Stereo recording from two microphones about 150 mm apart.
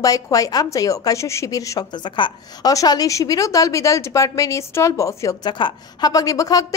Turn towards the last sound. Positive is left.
turn(degrees=25)  # may be behind; listen again after turning